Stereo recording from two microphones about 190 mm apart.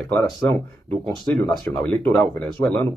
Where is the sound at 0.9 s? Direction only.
25° right (ahead or behind).